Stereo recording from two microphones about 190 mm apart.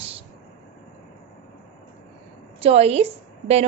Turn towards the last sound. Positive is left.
turn(degrees=-35)  # may be behind; listen again after turning